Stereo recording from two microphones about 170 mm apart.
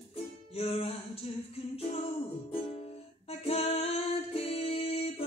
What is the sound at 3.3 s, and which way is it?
Music, 35° left (ahead or behind).